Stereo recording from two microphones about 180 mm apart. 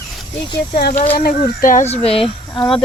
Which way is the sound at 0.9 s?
35° left (ahead or behind).